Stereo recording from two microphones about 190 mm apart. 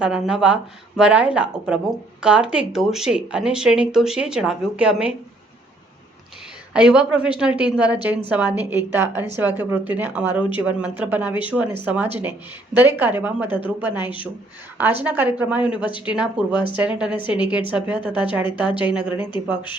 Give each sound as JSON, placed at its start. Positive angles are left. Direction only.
{"t": 0.0, "sound": "speech", "side_deg": -5}
{"t": 6.7, "sound": "a woman's voice", "side_deg": -5}
{"t": 14.0, "sound": "speech", "side_deg": 25}
{"t": 14.8, "sound": "a woman's voice", "side_deg": -10}
{"t": 15.9, "sound": "speech", "side_deg": 25}
{"t": 16.1, "sound": "a woman's voice", "side_deg": -5}